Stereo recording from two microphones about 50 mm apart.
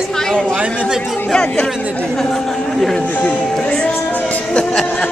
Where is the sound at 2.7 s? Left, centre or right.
Centre.